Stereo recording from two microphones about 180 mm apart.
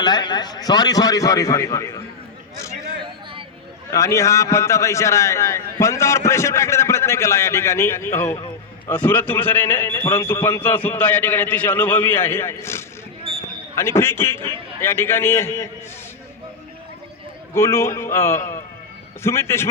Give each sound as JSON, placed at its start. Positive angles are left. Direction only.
{"t": 0.0, "sound": "a man's voice", "side_deg": 25}
{"t": 3.9, "sound": "a man's voice", "side_deg": 15}
{"t": 13.3, "sound": "basketball bounce", "side_deg": -30}
{"t": 13.7, "sound": "a man's voice", "side_deg": 15}
{"t": 17.5, "sound": "a man's voice", "side_deg": 15}